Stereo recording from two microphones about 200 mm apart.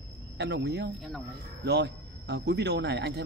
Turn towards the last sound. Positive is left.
turn(degrees=-60)  # may be behind; listen again after turning